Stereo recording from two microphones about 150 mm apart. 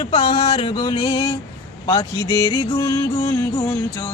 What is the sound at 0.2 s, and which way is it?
Music, 25° left (ahead or behind).